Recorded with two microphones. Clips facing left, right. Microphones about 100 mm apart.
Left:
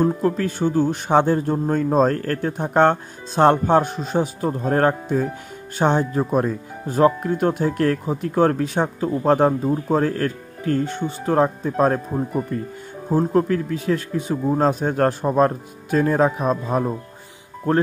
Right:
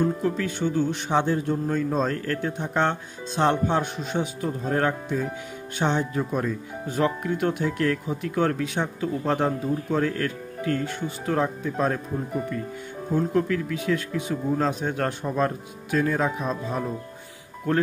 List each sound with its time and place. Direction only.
0.0 s speech: 45° left (ahead or behind)
17.7 s speech: 35° left (ahead or behind)